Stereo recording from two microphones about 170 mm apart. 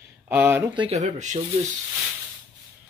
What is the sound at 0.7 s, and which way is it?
Speech, 35° right (ahead or behind).